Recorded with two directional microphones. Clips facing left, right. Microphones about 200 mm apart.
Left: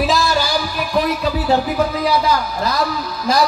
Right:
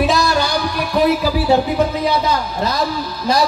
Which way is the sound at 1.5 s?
25° right (ahead or behind).